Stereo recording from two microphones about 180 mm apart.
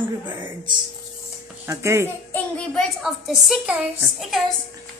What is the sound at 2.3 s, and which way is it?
A woman's voice, 5° left (ahead or behind).